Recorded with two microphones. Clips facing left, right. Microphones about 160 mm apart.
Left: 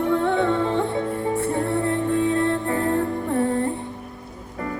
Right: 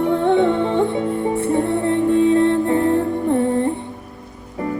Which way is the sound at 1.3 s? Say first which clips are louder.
Right 4 dB; 20° right (ahead or behind).